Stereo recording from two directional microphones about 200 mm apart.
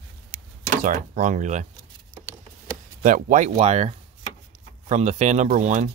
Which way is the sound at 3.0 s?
40° right (ahead or behind).